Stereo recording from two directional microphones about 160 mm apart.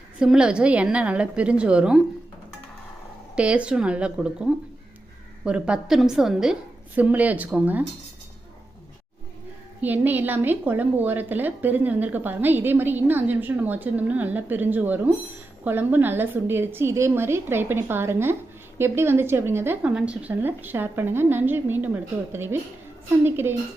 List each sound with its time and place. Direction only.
0.2 s a woman's voice: 5° right (ahead or behind)
3.3 s a woman's voice: 5° right (ahead or behind)
9.8 s a woman's voice: 10° right (ahead or behind)